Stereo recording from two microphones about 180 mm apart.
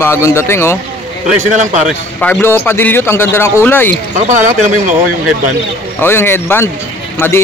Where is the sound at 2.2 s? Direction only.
10° left (ahead or behind).